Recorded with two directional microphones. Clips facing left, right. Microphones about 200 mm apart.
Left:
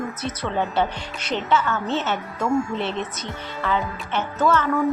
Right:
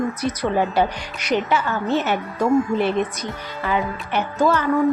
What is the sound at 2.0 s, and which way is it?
Speech, 15° right (ahead or behind).